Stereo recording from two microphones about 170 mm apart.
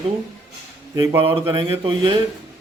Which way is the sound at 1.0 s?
15° right (ahead or behind).